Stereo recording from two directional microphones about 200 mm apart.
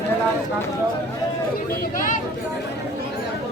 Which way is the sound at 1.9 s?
40° left (ahead or behind).